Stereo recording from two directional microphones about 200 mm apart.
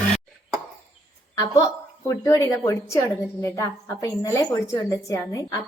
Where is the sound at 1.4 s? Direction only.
15° left (ahead or behind).